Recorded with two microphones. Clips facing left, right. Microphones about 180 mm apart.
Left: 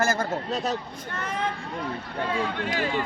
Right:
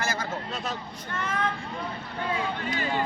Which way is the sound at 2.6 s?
90° left.